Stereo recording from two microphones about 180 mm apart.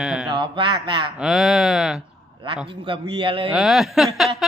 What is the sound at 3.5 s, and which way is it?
Speech, centre (ahead or behind).